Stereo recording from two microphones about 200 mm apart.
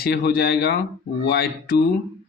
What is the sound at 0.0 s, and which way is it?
Speech, 50° left (ahead or behind).